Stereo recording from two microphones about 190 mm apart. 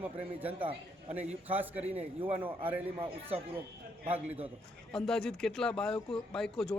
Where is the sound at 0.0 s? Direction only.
10° right (ahead or behind).